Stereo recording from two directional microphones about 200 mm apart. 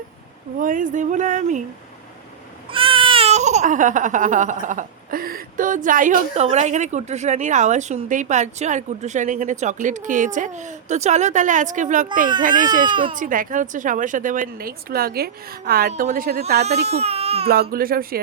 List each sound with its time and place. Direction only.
0.6 s baby cry: 40° right (ahead or behind)
2.7 s baby cry: 25° right (ahead or behind)
12.9 s speech: 25° right (ahead or behind)
13.1 s a woman's voice: 40° right (ahead or behind)
16.9 s speech: 30° right (ahead or behind)
17.5 s a woman's voice: 50° right (ahead or behind)